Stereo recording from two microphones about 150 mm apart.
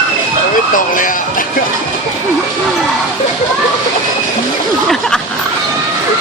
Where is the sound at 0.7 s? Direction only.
65° left (ahead or behind).